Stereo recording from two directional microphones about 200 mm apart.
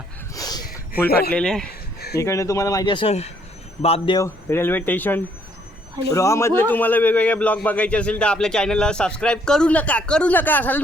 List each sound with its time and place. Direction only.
0.3 s a sound: 20° left (ahead or behind)
1.0 s speech: 50° left (ahead or behind)
1.3 s speech: 5° left (ahead or behind)
2.0 s a sound: 55° left (ahead or behind)
2.2 s a man's voice: 15° left (ahead or behind)
4.4 s a man's voice: 10° left (ahead or behind)